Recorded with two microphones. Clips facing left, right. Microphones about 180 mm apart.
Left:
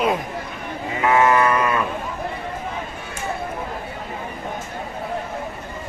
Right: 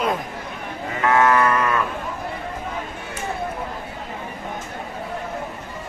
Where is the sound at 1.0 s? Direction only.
10° left (ahead or behind).